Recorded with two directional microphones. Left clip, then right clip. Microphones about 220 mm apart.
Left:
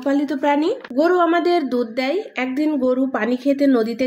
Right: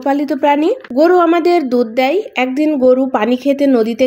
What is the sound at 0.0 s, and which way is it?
Speech, 30° right (ahead or behind).